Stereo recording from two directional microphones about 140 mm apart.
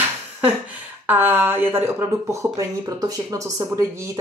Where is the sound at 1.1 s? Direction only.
15° right (ahead or behind).